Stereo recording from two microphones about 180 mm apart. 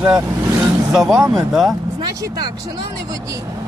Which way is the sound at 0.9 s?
5° right (ahead or behind).